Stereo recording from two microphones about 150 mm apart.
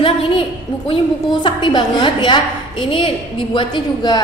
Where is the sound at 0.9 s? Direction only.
30° left (ahead or behind).